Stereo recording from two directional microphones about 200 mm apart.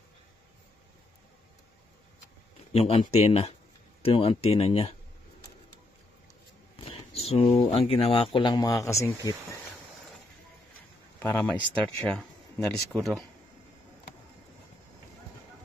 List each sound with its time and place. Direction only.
2.7 s speech: 30° left (ahead or behind)
6.8 s speech: 30° left (ahead or behind); by 9.6 s 15° left (ahead or behind)
11.1 s speech: 10° left (ahead or behind)